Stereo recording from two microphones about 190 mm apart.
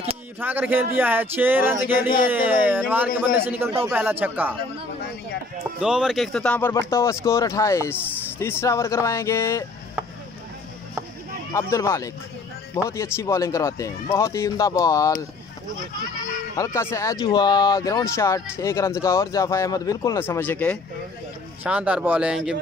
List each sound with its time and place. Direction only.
0.4 s speech: 10° right (ahead or behind)
5.8 s speech: 5° right (ahead or behind); by 9.7 s 15° left (ahead or behind)
11.5 s speech: 15° left (ahead or behind)
16.2 s speech: 15° left (ahead or behind)
21.6 s speech: 5° right (ahead or behind)